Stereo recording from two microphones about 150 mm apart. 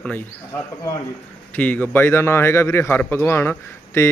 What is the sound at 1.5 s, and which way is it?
A man's voice, 10° left (ahead or behind).